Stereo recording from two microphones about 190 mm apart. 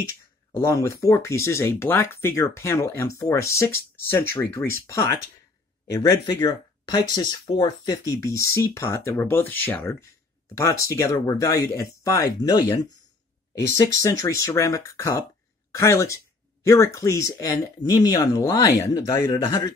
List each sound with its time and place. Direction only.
0.6 s speech: 15° left (ahead or behind)
13.9 s speech: 15° left (ahead or behind)